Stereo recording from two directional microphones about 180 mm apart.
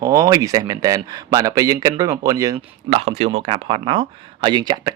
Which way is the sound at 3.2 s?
35° right (ahead or behind).